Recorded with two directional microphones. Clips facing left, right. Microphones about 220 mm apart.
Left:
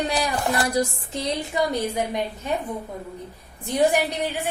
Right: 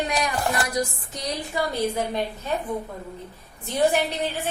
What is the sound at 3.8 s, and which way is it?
Speech, 15° left (ahead or behind).